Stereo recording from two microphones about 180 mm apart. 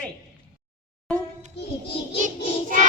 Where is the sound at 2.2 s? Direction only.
45° right (ahead or behind).